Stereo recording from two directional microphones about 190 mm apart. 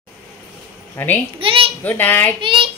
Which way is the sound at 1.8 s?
10° left (ahead or behind).